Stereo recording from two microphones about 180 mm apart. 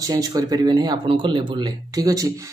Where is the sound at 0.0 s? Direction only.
20° right (ahead or behind).